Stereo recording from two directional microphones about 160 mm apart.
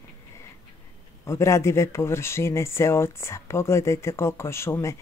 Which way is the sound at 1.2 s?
20° left (ahead or behind).